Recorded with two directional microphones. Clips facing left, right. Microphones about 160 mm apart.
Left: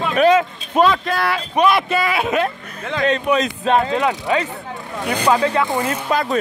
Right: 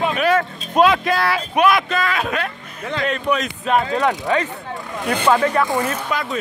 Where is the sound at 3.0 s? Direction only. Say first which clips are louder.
Left 4 dB; 30° left (ahead or behind).